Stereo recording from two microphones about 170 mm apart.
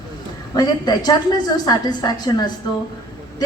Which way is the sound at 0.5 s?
25° left (ahead or behind).